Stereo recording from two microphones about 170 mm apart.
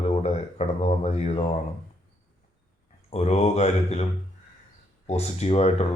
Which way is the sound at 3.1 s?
35° left (ahead or behind).